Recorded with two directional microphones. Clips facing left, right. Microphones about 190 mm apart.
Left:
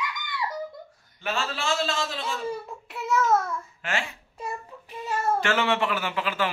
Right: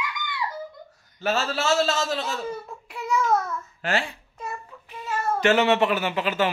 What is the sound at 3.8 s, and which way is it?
Speech, 35° right (ahead or behind).